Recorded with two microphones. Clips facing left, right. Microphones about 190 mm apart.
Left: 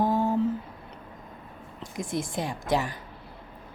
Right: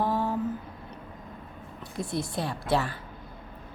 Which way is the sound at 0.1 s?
45° left (ahead or behind).